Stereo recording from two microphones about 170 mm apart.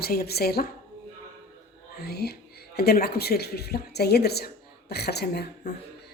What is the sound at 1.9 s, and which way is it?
Speech, 70° left (ahead or behind).